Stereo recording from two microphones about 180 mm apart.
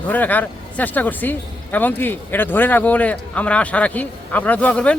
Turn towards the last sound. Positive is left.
turn(degrees=5)  # may be behind; listen again after turning